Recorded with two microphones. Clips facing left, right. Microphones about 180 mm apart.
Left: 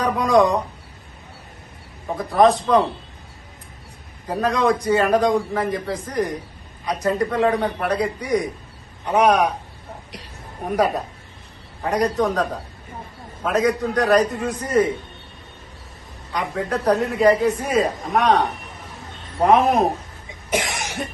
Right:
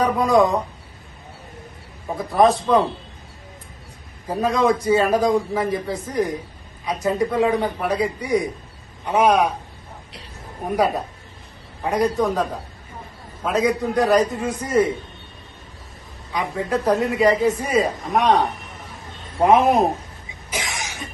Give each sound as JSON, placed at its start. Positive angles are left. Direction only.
{"t": 0.0, "sound": "speech", "side_deg": -5}
{"t": 2.1, "sound": "a man's voice", "side_deg": 0}
{"t": 4.3, "sound": "a man's voice", "side_deg": 0}
{"t": 11.8, "sound": "a man's voice", "side_deg": 0}
{"t": 16.3, "sound": "a man's voice", "side_deg": 0}
{"t": 20.5, "sound": "cough", "side_deg": 65}